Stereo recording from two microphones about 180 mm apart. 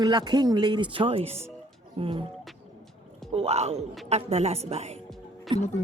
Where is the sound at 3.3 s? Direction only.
35° right (ahead or behind).